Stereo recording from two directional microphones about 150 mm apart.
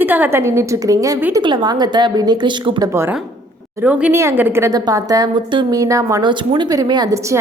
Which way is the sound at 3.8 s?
10° right (ahead or behind).